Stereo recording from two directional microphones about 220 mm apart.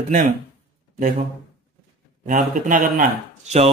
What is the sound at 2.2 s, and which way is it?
A man's voice, 35° right (ahead or behind).